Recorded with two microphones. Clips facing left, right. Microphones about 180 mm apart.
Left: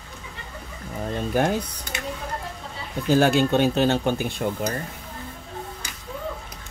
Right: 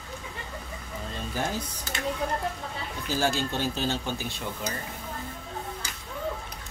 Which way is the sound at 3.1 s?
65° left (ahead or behind).